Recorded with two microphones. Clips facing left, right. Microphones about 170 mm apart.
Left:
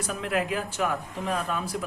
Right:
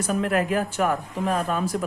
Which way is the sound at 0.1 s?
45° right (ahead or behind).